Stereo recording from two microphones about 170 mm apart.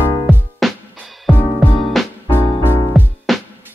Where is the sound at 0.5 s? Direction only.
Centre (ahead or behind).